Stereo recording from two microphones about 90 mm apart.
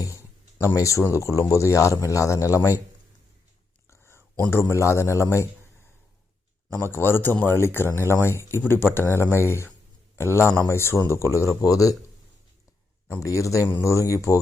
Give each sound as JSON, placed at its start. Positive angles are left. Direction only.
{"t": 0.6, "sound": "speech", "side_deg": 35}
{"t": 3.8, "sound": "a sound", "side_deg": 30}
{"t": 4.4, "sound": "speech", "side_deg": 20}
{"t": 4.6, "sound": "speech", "side_deg": 35}
{"t": 6.7, "sound": "a man's voice", "side_deg": 25}
{"t": 13.1, "sound": "speech", "side_deg": 35}